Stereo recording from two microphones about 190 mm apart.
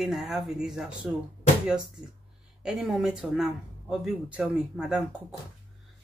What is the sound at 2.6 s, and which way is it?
Speech, 5° right (ahead or behind).